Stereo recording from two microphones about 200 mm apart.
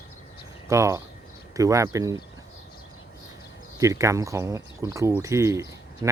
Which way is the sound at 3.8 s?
15° right (ahead or behind).